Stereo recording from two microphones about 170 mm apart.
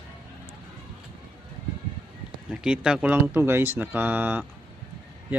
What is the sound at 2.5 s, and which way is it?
Speech, 5° right (ahead or behind).